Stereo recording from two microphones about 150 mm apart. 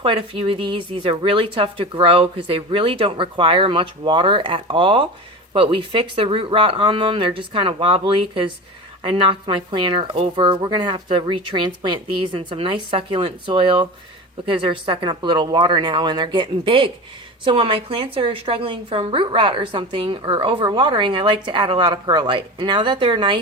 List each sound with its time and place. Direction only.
0.0 s speech: 35° right (ahead or behind)